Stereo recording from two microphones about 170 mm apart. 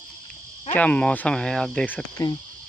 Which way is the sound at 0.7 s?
10° left (ahead or behind).